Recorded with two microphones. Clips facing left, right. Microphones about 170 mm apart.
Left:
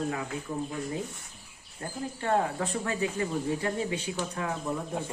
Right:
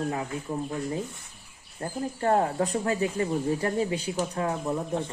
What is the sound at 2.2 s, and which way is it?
Speech, 40° right (ahead or behind).